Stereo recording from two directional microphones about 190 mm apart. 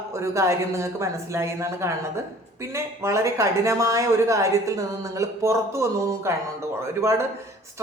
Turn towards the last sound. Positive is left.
turn(degrees=-15)  # may be behind; listen again after turning